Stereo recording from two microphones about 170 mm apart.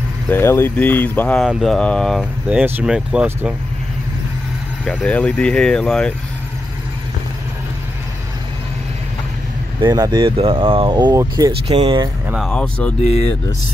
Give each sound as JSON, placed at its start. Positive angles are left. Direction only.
{"t": 0.3, "sound": "speech", "side_deg": 15}
{"t": 4.8, "sound": "speech", "side_deg": 5}
{"t": 9.8, "sound": "speech", "side_deg": -25}
{"t": 11.6, "sound": "speech", "side_deg": -35}
{"t": 12.3, "sound": "speech", "side_deg": 0}